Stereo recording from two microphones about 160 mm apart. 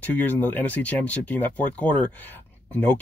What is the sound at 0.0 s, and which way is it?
Speech, 10° left (ahead or behind).